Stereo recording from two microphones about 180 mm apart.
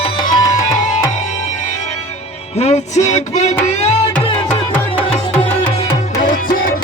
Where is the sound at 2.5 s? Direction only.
40° left (ahead or behind).